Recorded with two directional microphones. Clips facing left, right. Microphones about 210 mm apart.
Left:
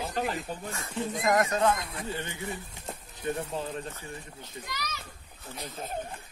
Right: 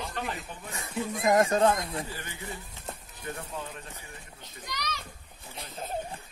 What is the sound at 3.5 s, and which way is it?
Speech, 30° left (ahead or behind).